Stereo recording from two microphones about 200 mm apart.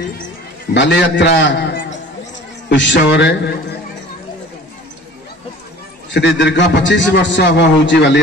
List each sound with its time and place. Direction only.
0.7 s a man's voice: 60° left (ahead or behind)
6.1 s a man's voice: 60° left (ahead or behind)